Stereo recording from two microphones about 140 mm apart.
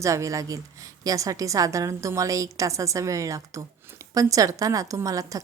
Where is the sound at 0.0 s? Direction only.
20° right (ahead or behind).